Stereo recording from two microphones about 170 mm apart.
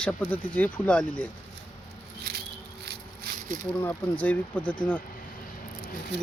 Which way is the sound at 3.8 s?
10° left (ahead or behind).